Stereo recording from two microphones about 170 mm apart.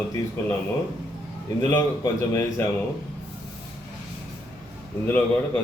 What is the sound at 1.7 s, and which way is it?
Speech, 15° left (ahead or behind).